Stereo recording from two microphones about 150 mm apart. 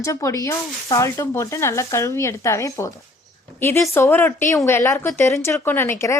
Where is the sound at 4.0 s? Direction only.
15° left (ahead or behind).